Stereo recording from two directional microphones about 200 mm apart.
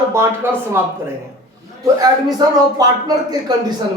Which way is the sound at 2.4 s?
20° right (ahead or behind).